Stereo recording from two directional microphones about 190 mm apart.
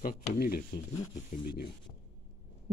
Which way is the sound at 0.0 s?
50° left (ahead or behind).